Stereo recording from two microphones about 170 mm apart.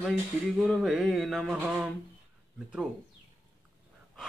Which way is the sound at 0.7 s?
Centre (ahead or behind).